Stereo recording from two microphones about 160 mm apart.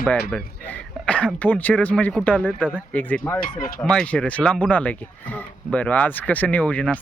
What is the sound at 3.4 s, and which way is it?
Speech, 60° left (ahead or behind).